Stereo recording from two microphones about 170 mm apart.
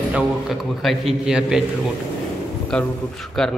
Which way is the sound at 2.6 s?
5° left (ahead or behind).